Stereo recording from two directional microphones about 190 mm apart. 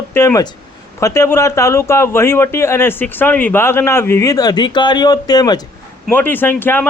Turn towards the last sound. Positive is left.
turn(degrees=10)  # may be behind; listen again after turning